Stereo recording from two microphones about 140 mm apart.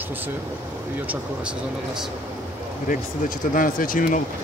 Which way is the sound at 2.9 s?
80° left.